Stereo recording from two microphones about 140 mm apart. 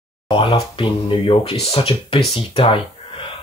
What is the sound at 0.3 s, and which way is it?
Speech, 40° left (ahead or behind).